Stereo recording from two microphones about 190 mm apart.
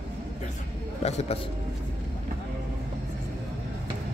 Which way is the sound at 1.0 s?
35° left (ahead or behind).